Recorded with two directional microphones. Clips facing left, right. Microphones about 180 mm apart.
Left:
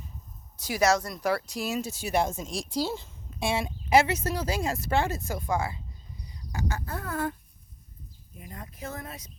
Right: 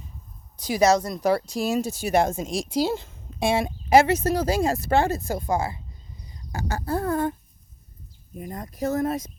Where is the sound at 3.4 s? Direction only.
50° right (ahead or behind); by 7.1 s 35° right (ahead or behind).